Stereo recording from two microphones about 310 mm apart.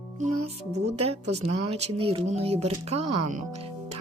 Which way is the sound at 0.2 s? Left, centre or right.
Right.